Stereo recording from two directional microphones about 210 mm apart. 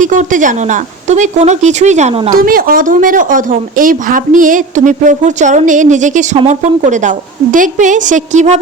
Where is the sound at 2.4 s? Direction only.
40° right (ahead or behind).